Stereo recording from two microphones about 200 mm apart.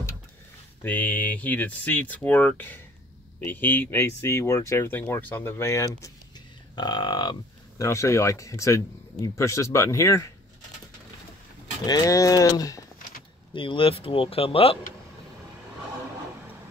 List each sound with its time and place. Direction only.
0.8 s speech: 5° left (ahead or behind)
11.8 s speech: 20° left (ahead or behind)